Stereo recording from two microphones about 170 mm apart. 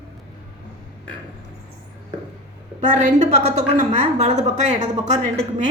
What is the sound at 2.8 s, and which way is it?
A woman's voice, 45° right (ahead or behind).